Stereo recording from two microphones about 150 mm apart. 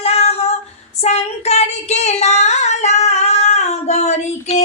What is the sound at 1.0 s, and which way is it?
Child singing, 45° left (ahead or behind).